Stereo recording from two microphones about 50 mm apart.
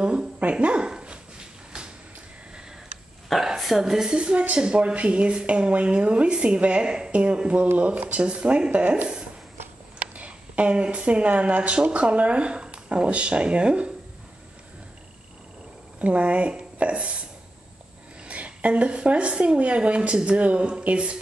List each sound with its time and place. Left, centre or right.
0.0 s a woman's voice: right
3.4 s speech: centre; by 8.8 s right
8.8 s speech: right
10.1 s speech: right
16.0 s speech: right
18.2 s speech: right